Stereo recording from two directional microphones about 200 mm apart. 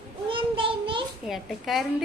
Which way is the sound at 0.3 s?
25° right (ahead or behind).